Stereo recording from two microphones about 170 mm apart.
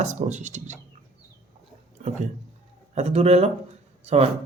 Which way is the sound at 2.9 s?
40° right (ahead or behind).